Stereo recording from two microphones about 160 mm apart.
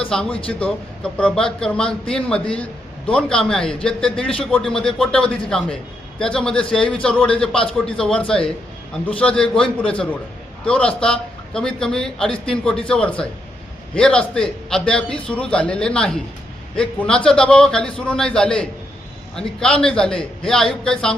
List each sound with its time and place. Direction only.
0.1 s a man's voice: 5° left (ahead or behind)